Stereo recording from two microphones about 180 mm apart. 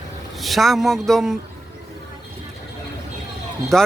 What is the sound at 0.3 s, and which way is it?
Speech, centre (ahead or behind).